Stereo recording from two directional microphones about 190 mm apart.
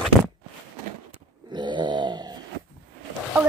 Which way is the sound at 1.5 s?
25° right (ahead or behind).